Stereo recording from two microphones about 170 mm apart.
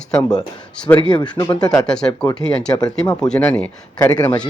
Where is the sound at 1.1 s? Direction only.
20° left (ahead or behind).